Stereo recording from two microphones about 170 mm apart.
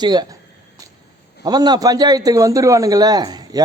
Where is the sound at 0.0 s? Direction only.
25° right (ahead or behind).